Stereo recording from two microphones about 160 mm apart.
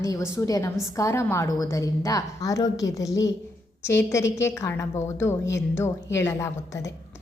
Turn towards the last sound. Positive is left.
turn(degrees=20)  # may be behind; listen again after turning